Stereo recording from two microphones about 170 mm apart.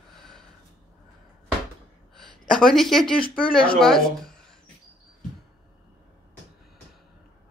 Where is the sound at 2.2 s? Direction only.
Centre (ahead or behind).